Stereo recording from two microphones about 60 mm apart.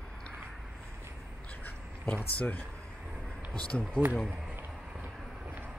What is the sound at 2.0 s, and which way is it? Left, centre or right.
Speech, left.